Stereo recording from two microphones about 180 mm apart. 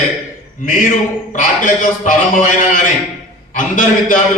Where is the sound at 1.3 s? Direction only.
45° left (ahead or behind).